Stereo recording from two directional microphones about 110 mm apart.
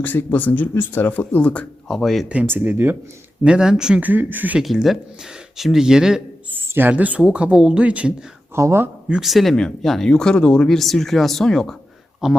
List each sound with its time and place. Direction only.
0.0 s speech: 20° left (ahead or behind); by 2.2 s 5° left (ahead or behind)
2.3 s speech: 15° right (ahead or behind)
3.4 s speech: 10° right (ahead or behind)
4.6 s speech: centre (ahead or behind)
6.5 s speech: 15° right (ahead or behind)
8.5 s speech: 25° right (ahead or behind)
9.0 s speech: 5° right (ahead or behind)